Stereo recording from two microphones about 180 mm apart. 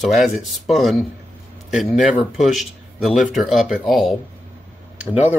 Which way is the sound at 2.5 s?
Centre (ahead or behind).